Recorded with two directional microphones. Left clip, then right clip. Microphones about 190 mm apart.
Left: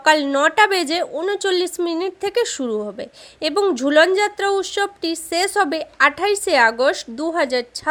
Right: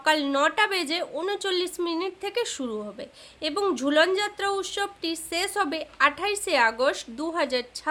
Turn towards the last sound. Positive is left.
turn(degrees=25)  # may be behind; listen again after turning